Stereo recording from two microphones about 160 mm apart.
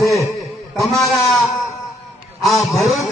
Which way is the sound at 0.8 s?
Centre (ahead or behind).